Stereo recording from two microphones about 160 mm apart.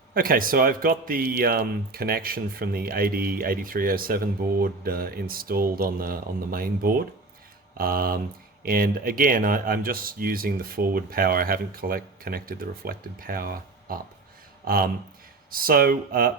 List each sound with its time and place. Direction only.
0.1 s speech: 65° right (ahead or behind)
15.4 s speech: 65° right (ahead or behind)